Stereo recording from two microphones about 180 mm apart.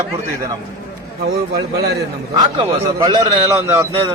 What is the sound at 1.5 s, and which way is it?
Speech, 65° right (ahead or behind).